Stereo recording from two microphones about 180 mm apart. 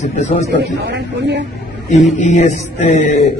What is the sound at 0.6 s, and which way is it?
Speech, 70° right (ahead or behind).